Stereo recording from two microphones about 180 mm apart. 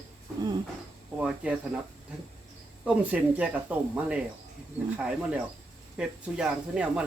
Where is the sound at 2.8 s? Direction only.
5° right (ahead or behind).